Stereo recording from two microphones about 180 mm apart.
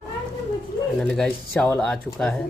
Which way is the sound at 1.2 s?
5° left (ahead or behind).